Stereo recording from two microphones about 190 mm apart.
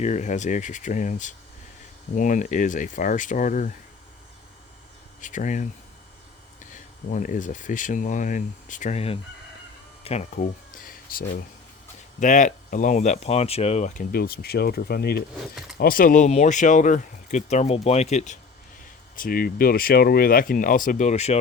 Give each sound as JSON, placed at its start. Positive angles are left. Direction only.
{"t": 0.0, "sound": "speech", "side_deg": 40}
{"t": 5.2, "sound": "speech", "side_deg": 40}
{"t": 6.7, "sound": "speech", "side_deg": 45}
{"t": 19.1, "sound": "speech", "side_deg": 50}